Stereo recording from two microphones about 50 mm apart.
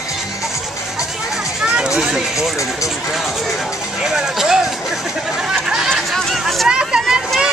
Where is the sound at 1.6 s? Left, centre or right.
Centre.